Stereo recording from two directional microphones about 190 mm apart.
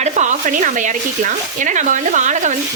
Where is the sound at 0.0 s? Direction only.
40° right (ahead or behind).